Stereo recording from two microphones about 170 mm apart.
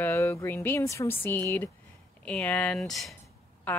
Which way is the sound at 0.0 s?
15° left (ahead or behind).